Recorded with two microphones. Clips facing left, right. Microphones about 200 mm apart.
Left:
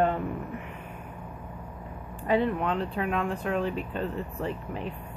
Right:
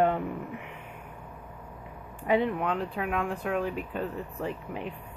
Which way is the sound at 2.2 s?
15° right (ahead or behind).